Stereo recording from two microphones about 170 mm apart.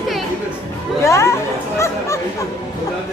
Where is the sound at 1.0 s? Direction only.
15° left (ahead or behind).